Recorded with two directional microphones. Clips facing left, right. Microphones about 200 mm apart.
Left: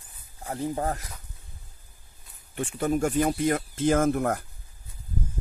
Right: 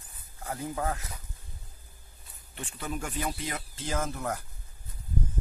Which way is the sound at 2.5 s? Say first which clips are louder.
Left 11 dB; 50° left (ahead or behind).